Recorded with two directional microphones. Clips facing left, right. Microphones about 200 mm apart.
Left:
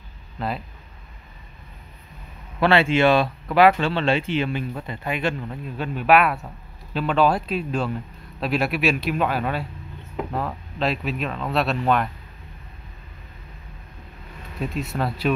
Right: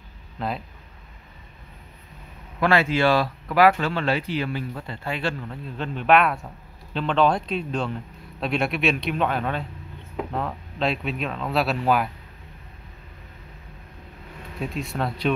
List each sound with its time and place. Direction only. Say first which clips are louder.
0.4 s speech: left 1 dB; centre (ahead or behind)
2.6 s speech: left 3 dB; 25° left (ahead or behind); by 12.1 s 5° right (ahead or behind)
14.6 s speech: left 2 dB; centre (ahead or behind)